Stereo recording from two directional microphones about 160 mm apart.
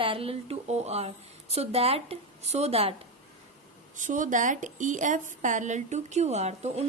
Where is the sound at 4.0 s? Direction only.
50° right (ahead or behind).